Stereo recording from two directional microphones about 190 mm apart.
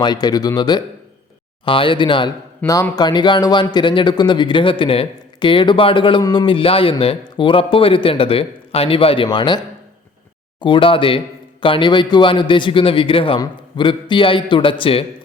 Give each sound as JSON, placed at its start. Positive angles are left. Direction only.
{"t": 0.0, "sound": "a man's voice", "side_deg": 20}
{"t": 2.6, "sound": "a man's voice", "side_deg": 15}
{"t": 10.6, "sound": "a man's voice", "side_deg": 25}